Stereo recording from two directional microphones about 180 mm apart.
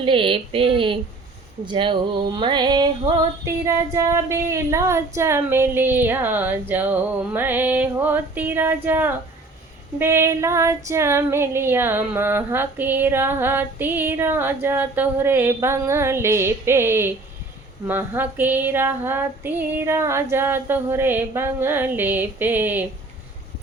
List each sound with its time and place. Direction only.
0.0 s speech: 30° right (ahead or behind)
1.6 s female singing: 25° right (ahead or behind); by 22.9 s 10° right (ahead or behind)